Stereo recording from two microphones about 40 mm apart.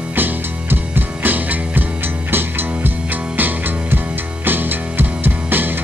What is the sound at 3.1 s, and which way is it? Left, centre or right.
Music, right.